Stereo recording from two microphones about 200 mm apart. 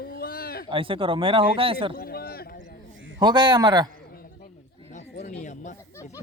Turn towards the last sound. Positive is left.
turn(degrees=35)  # may be behind; listen again after turning